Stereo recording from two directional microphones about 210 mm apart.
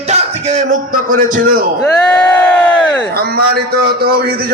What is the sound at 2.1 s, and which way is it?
Crowd, 10° left (ahead or behind).